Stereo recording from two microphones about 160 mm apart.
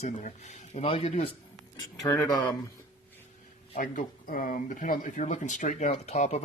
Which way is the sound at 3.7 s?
55° left (ahead or behind).